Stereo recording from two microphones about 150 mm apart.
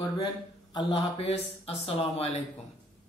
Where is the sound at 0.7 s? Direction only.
40° left (ahead or behind).